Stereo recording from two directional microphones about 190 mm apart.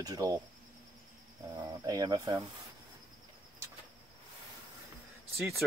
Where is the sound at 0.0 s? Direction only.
20° right (ahead or behind).